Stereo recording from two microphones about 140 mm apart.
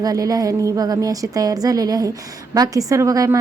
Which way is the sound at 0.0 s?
25° right (ahead or behind).